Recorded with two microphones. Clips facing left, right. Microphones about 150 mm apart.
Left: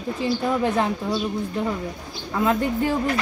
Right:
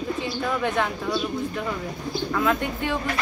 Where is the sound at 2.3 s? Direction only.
35° left (ahead or behind).